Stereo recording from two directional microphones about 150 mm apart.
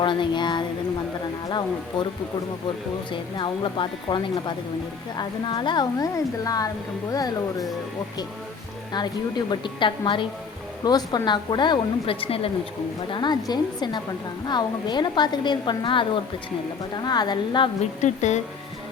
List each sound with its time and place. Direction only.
0.0 s a woman's voice: 30° left (ahead or behind)
3.1 s a woman's voice: 35° left (ahead or behind)
8.9 s a woman's voice: 30° left (ahead or behind)
18.0 s speech: 50° left (ahead or behind)